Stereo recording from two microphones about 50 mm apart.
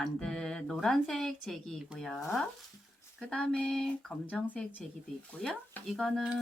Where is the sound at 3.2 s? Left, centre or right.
Centre.